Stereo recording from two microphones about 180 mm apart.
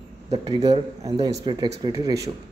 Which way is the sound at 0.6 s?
35° right (ahead or behind).